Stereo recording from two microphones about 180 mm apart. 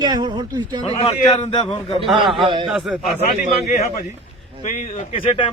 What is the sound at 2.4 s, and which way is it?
Speech, 25° right (ahead or behind).